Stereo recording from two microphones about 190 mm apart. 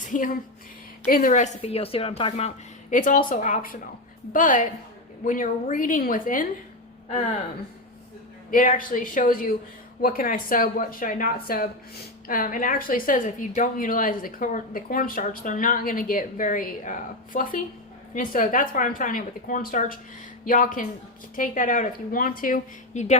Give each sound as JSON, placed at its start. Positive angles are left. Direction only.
{"t": 0.0, "sound": "a woman's voice", "side_deg": 45}
{"t": 2.9, "sound": "a woman's voice", "side_deg": 45}
{"t": 8.4, "sound": "a woman's voice", "side_deg": 45}